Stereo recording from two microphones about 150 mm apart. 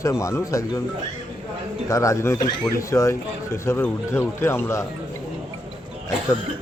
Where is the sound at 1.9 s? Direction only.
20° left (ahead or behind).